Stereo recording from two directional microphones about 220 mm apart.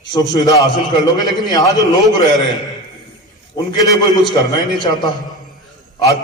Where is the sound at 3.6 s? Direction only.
15° left (ahead or behind).